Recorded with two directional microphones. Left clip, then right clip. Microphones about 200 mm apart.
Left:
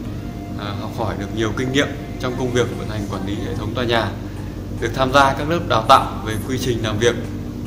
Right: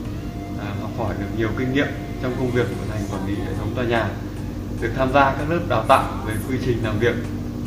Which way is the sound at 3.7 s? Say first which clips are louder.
Left 3 dB; 20° left (ahead or behind).